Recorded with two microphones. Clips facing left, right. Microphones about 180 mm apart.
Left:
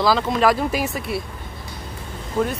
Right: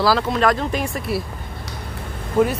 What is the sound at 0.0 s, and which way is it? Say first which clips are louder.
Speech: even; centre (ahead or behind).